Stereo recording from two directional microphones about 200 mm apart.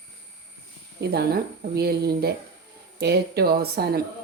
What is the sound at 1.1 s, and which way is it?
A woman's voice, 50° right (ahead or behind).